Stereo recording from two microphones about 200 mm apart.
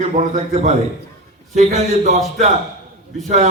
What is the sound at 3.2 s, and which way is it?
Speech, 35° right (ahead or behind).